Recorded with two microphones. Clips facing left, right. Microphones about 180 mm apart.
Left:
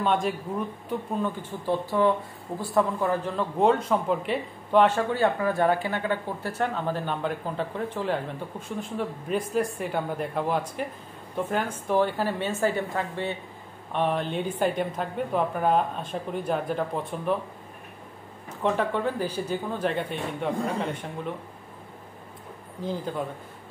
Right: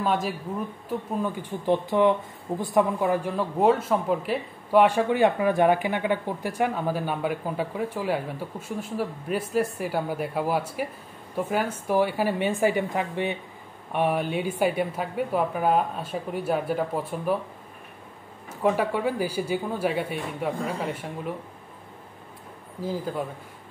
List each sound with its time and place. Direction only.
0.0 s speech: 5° right (ahead or behind)
18.6 s speech: 10° right (ahead or behind)
22.8 s speech: 5° right (ahead or behind)